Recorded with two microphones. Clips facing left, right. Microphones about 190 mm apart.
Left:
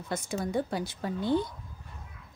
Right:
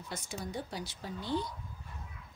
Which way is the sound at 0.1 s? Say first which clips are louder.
Left 10 dB; 50° left (ahead or behind).